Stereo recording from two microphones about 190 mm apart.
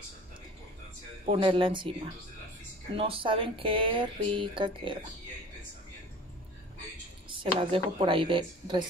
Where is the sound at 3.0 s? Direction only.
30° right (ahead or behind).